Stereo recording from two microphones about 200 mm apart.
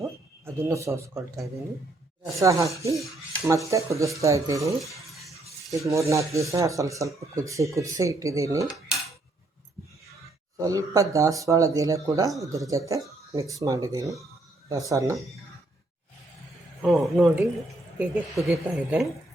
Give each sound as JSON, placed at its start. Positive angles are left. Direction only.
{"t": 0.0, "sound": "a sound", "side_deg": -15}
{"t": 2.4, "sound": "speech", "side_deg": -15}
{"t": 5.7, "sound": "speech", "side_deg": -15}
{"t": 8.6, "sound": "cutlery", "side_deg": 0}
{"t": 10.6, "sound": "speech", "side_deg": -15}
{"t": 16.8, "sound": "speech", "side_deg": 0}